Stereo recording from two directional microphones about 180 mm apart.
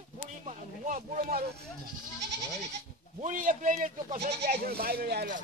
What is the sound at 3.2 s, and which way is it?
Speech, 45° right (ahead or behind).